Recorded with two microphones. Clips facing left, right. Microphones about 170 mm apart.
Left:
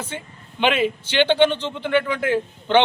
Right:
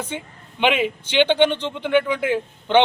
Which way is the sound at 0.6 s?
10° right (ahead or behind).